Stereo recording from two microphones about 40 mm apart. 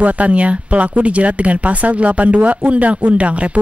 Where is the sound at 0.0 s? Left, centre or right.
Right.